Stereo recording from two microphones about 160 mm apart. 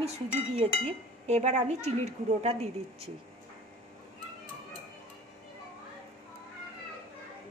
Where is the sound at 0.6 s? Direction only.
40° right (ahead or behind).